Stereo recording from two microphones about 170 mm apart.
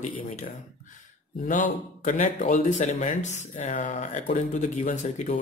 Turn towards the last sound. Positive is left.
turn(degrees=45)  # may be behind; listen again after turning